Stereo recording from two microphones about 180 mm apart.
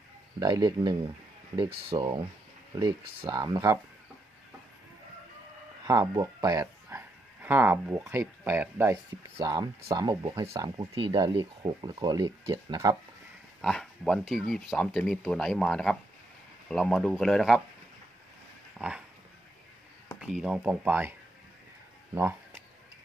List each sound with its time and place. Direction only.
0.3 s speech: 20° right (ahead or behind)
3.2 s speech: 20° right (ahead or behind)
5.8 s speech: 20° right (ahead or behind)
13.6 s speech: centre (ahead or behind)
18.8 s dog: 5° right (ahead or behind)
20.2 s speech: 5° right (ahead or behind)
22.1 s speech: 15° right (ahead or behind)